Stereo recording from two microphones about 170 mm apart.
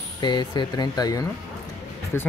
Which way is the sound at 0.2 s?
25° left (ahead or behind).